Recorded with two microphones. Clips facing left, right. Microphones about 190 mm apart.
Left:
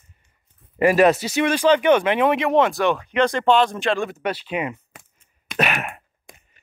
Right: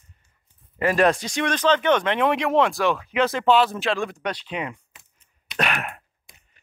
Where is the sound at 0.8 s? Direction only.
10° left (ahead or behind).